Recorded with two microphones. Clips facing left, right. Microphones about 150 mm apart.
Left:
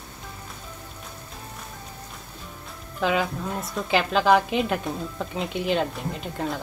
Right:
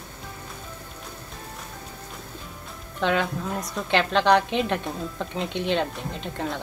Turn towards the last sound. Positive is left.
turn(degrees=5)  # may be behind; listen again after turning